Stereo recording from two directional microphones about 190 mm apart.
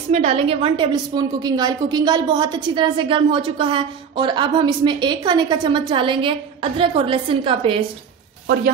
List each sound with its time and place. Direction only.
0.1 s a woman's voice: 35° right (ahead or behind)